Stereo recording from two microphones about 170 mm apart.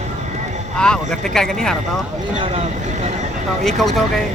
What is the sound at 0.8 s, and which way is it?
Speech, 5° left (ahead or behind).